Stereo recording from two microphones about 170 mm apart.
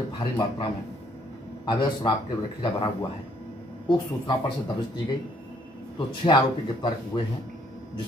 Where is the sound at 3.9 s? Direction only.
25° left (ahead or behind).